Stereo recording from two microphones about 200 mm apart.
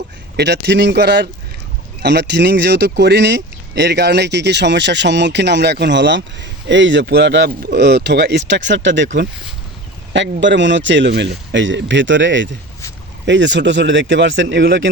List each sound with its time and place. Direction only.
0.3 s speech: 60° right (ahead or behind)
10.4 s speech: 65° right (ahead or behind)